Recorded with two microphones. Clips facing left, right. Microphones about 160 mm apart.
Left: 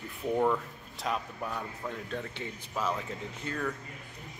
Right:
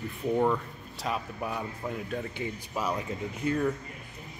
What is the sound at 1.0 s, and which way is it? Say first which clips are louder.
Speech: right 1 dB; 5° right (ahead or behind).